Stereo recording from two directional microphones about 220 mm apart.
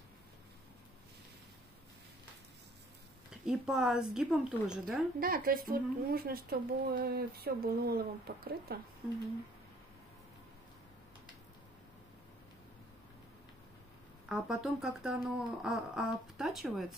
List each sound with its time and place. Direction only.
3.4 s speech: 5° right (ahead or behind)
5.2 s a woman's voice: 40° right (ahead or behind)
14.3 s speech: 5° right (ahead or behind)